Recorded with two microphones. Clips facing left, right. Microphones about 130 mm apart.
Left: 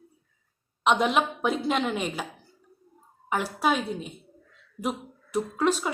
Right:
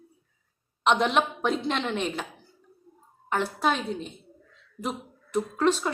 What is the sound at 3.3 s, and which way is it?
A woman's voice, 5° left (ahead or behind).